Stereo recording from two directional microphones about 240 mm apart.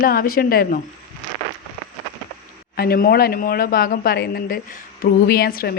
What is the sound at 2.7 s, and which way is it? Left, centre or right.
Speech, left.